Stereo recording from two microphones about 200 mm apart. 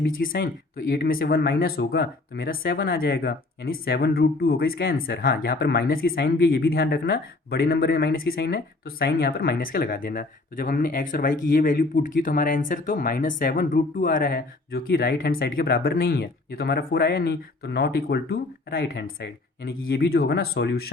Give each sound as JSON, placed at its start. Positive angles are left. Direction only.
{"t": 0.0, "sound": "speech", "side_deg": 45}